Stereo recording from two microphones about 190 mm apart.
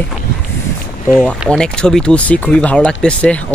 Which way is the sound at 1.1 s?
5° right (ahead or behind).